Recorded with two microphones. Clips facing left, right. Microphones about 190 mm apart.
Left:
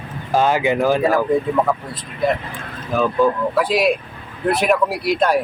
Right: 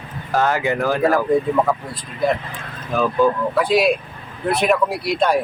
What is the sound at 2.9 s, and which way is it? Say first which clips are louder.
Speech: even; centre (ahead or behind).